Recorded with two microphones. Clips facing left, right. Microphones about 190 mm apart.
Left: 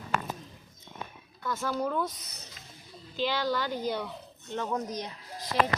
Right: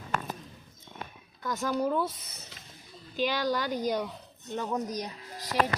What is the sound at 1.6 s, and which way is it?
Speech, 10° right (ahead or behind).